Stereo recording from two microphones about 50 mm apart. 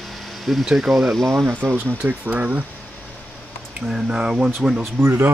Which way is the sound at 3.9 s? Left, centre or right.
Centre.